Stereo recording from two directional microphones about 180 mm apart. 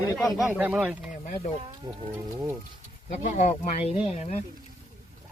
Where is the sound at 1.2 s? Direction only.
45° left (ahead or behind).